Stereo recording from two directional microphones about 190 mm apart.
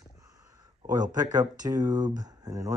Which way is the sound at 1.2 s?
20° right (ahead or behind).